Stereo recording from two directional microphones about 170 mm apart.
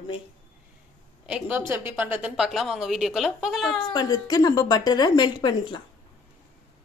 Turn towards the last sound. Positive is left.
turn(degrees=25)  # may be behind; listen again after turning